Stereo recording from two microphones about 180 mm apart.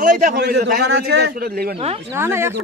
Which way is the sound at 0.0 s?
45° right (ahead or behind).